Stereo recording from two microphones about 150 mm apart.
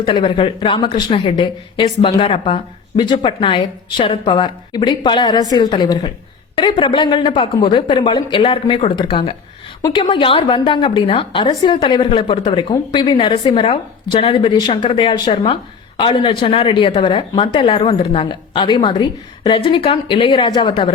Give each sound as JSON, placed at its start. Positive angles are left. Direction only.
{"t": 0.0, "sound": "speech", "side_deg": 35}